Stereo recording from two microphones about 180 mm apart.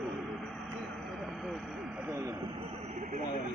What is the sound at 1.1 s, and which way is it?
Vehicle, centre (ahead or behind).